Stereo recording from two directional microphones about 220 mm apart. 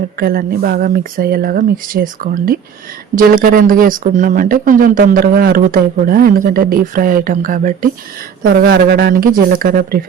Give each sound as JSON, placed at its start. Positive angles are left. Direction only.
{"t": 0.2, "sound": "speech", "side_deg": -45}